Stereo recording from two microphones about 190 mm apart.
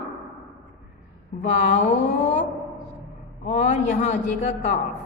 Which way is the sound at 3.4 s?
40° left (ahead or behind).